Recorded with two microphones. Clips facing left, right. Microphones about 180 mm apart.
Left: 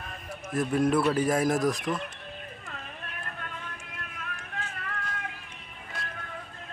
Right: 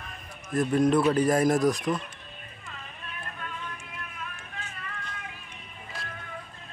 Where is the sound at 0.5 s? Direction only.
5° left (ahead or behind).